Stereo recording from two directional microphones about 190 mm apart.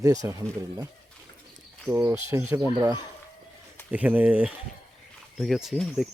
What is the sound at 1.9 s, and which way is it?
Speech, 10° right (ahead or behind).